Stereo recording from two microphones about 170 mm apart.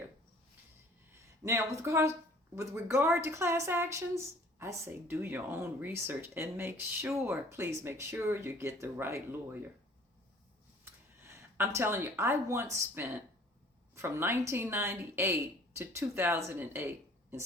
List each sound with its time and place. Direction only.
1.5 s speech: 15° right (ahead or behind)
11.2 s speech: 15° right (ahead or behind)